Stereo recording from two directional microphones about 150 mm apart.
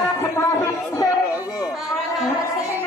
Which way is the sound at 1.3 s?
5° right (ahead or behind).